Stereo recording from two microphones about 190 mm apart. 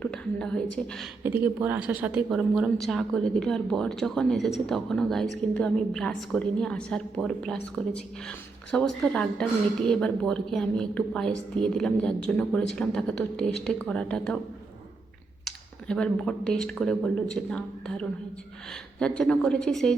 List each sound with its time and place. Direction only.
0.0 s a woman's voice: 5° left (ahead or behind)
1.2 s a woman's voice: 10° right (ahead or behind); by 14.3 s 5° left (ahead or behind)
15.4 s a woman's voice: 5° left (ahead or behind)